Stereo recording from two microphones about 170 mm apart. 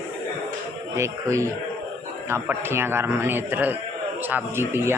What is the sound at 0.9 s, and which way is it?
A man's voice, 15° right (ahead or behind).